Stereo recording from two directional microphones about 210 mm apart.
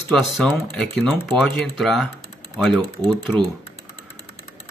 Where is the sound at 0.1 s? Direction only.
5° left (ahead or behind).